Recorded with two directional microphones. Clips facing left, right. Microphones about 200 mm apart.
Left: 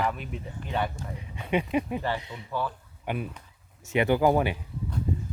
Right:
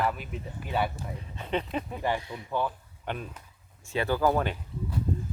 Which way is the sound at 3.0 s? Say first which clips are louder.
Left 3 dB; 10° left (ahead or behind).